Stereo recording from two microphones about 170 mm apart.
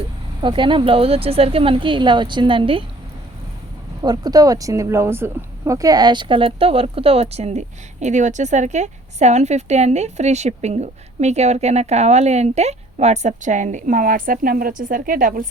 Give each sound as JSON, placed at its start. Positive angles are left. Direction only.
{"t": 0.4, "sound": "speech", "side_deg": -30}
{"t": 4.0, "sound": "a woman's voice", "side_deg": -20}